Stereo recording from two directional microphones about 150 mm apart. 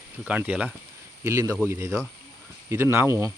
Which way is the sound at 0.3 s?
10° right (ahead or behind).